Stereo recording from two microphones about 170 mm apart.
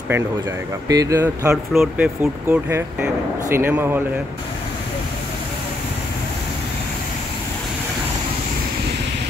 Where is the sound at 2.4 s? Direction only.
15° right (ahead or behind).